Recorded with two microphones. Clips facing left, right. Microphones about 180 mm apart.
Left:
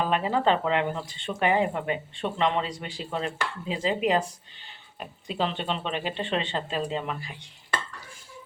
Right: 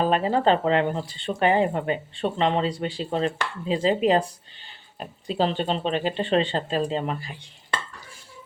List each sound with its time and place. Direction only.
0.0 s speech: 35° right (ahead or behind)